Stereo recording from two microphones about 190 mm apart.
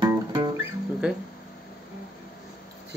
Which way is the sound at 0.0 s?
20° right (ahead or behind).